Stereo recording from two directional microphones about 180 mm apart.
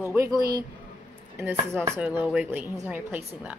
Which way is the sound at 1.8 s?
10° right (ahead or behind).